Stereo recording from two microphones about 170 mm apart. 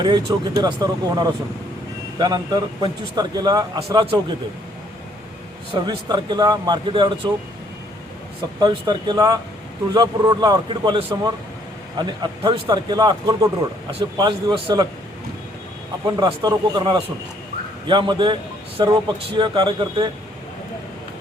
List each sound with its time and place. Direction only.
0.0 s a man's voice: 25° right (ahead or behind)
5.8 s a man's voice: 25° right (ahead or behind)
8.6 s a man's voice: 25° right (ahead or behind)
16.0 s a man's voice: 25° right (ahead or behind)